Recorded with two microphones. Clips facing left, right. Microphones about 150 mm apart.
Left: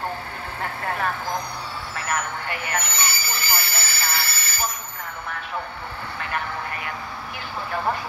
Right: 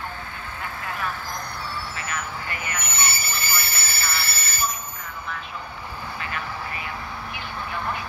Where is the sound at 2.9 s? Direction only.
25° right (ahead or behind).